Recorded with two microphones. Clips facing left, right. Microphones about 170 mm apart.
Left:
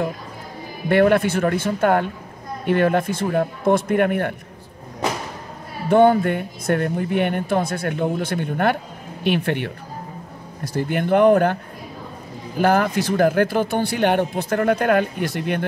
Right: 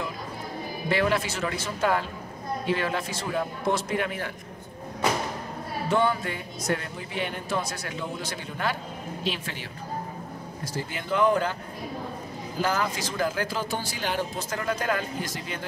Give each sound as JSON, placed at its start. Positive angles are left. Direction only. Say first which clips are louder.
{"t": 0.8, "sound": "speech", "louder": "left 10 dB", "side_deg": 55}
{"t": 5.9, "sound": "speech", "louder": "left 11 dB", "side_deg": 55}
{"t": 12.5, "sound": "speech", "louder": "left 9 dB", "side_deg": 60}